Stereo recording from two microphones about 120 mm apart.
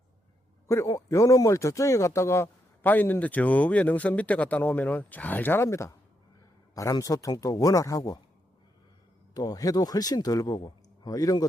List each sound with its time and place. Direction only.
0.7 s a man's voice: 25° left (ahead or behind)
9.3 s a man's voice: 30° left (ahead or behind)